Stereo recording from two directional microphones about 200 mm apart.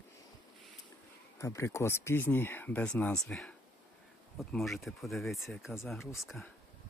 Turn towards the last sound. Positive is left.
turn(degrees=0)  # may be behind; listen again after turning